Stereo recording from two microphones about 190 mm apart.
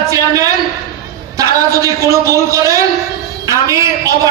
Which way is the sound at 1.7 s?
15° right (ahead or behind).